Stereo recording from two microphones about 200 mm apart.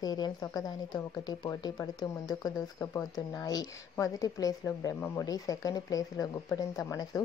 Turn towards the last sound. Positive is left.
turn(degrees=20)  # may be behind; listen again after turning